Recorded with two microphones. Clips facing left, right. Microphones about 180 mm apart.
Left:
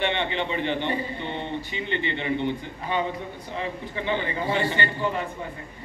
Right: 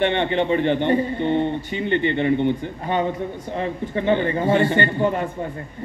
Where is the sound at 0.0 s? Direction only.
50° right (ahead or behind).